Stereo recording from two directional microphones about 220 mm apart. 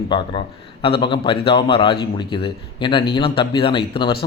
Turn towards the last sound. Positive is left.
turn(degrees=20)  # may be behind; listen again after turning